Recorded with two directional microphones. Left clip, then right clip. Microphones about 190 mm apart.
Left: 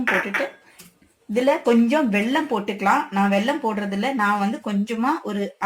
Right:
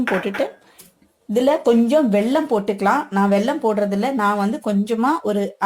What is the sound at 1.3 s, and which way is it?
Speech, 60° right (ahead or behind).